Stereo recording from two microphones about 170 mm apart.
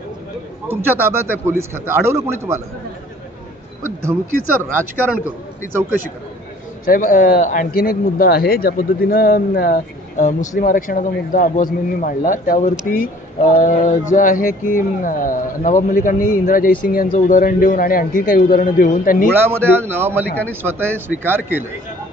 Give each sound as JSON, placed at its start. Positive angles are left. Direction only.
{"t": 0.7, "sound": "a man's voice", "side_deg": -15}
{"t": 3.8, "sound": "a man's voice", "side_deg": -15}
{"t": 6.9, "sound": "a man's voice", "side_deg": 55}
{"t": 19.3, "sound": "a man's voice", "side_deg": -15}